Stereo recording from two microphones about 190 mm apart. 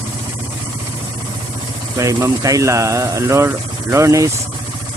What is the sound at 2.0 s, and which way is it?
Speech, 15° right (ahead or behind).